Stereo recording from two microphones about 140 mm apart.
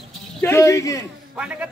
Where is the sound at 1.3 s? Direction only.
10° right (ahead or behind).